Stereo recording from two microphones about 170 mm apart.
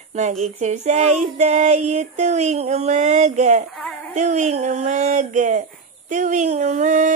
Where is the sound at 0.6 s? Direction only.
45° right (ahead or behind).